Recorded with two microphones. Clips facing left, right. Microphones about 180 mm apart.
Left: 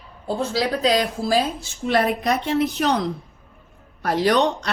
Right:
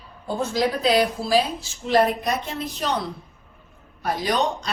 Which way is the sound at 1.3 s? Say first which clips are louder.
Left 2 dB; 60° left (ahead or behind).